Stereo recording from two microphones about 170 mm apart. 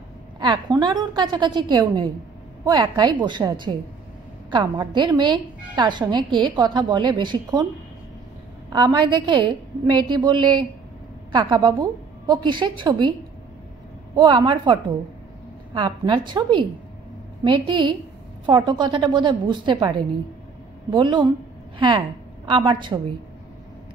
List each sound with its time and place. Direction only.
0.4 s a woman's voice: 25° right (ahead or behind)
8.7 s a woman's voice: 25° right (ahead or behind)
14.1 s a woman's voice: 30° right (ahead or behind)